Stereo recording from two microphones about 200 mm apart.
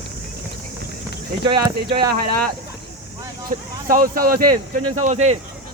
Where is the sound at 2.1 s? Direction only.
50° right (ahead or behind).